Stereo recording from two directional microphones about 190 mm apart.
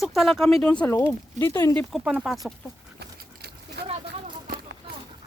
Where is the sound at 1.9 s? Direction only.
5° right (ahead or behind).